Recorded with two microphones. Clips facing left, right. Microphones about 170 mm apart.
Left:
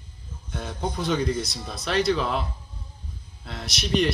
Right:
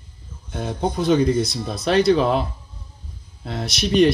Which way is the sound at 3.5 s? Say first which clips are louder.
Right 4 dB; 30° right (ahead or behind).